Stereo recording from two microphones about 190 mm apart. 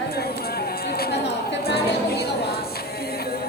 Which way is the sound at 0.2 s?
55° left (ahead or behind).